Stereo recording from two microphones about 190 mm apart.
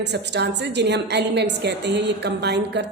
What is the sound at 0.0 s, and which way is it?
A woman's voice, 65° right (ahead or behind).